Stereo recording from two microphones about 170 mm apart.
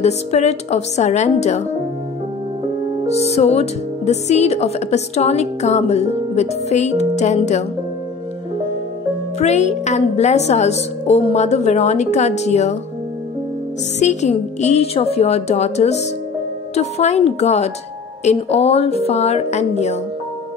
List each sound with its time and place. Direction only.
0.0 s a woman's voice: 40° left (ahead or behind)
3.3 s a woman's voice: 40° left (ahead or behind)
9.4 s a woman's voice: 40° left (ahead or behind)
13.9 s a woman's voice: 45° left (ahead or behind)